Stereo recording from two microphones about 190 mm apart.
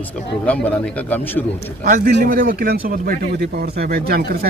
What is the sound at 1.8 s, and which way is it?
Speech, 50° right (ahead or behind).